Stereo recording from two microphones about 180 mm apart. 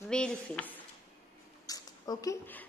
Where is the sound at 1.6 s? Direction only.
20° left (ahead or behind).